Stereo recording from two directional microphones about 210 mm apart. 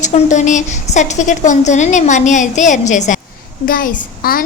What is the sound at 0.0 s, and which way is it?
A woman's voice, 35° left (ahead or behind).